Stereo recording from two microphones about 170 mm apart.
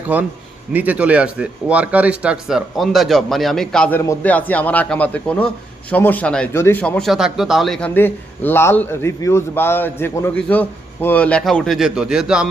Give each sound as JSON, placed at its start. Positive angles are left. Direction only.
{"t": 0.1, "sound": "a man's voice", "side_deg": -10}